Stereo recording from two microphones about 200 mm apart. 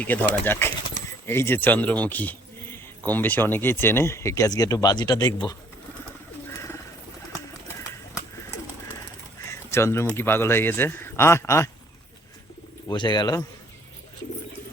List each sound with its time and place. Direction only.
0.0 s speech: 10° left (ahead or behind)
6.5 s bird: 15° left (ahead or behind)
9.5 s a sound: 15° left (ahead or behind)
10.2 s speech: 10° left (ahead or behind)
12.9 s speech: 20° left (ahead or behind)